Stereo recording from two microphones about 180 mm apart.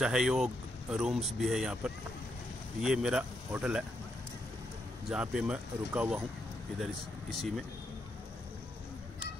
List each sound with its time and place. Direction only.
0.0 s speech: 5° right (ahead or behind)
2.8 s speech: 5° right (ahead or behind)
5.1 s speech: 5° right (ahead or behind)